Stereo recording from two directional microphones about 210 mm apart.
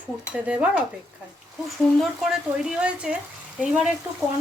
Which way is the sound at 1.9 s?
Centre (ahead or behind).